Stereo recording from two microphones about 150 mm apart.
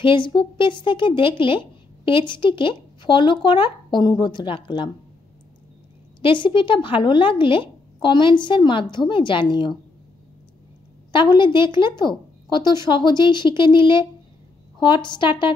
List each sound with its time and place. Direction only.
0.0 s a woman's voice: 35° left (ahead or behind)
6.2 s a woman's voice: 35° left (ahead or behind)
11.1 s a woman's voice: 30° left (ahead or behind)